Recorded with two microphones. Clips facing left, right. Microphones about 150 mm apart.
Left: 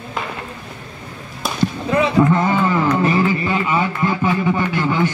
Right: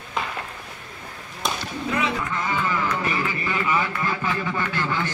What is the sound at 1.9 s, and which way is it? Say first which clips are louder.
A man's voice: left 10 dB; 35° left (ahead or behind).